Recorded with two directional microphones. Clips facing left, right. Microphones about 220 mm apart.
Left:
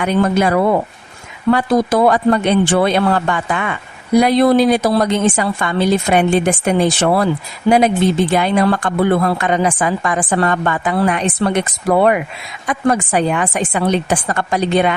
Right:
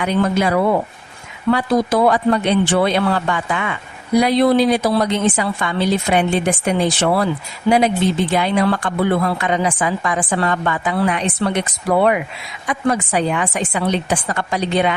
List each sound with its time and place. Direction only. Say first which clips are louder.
0.0 s a woman's voice: left 3 dB; 50° left (ahead or behind)
8.3 s a woman's voice: left 2 dB; 50° left (ahead or behind)